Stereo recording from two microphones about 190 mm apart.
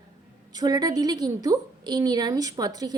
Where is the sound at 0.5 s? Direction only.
20° right (ahead or behind).